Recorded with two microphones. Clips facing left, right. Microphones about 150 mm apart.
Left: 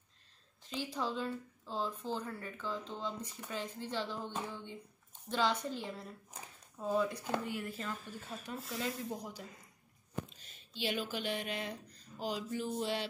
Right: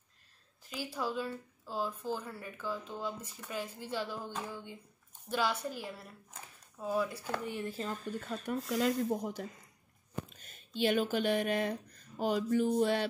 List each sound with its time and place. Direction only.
0.7 s speech: 5° right (ahead or behind)
7.2 s speech: 15° left (ahead or behind)
7.5 s speech: 30° right (ahead or behind)
8.5 s speech: 60° right (ahead or behind)
9.1 s speech: 50° right (ahead or behind)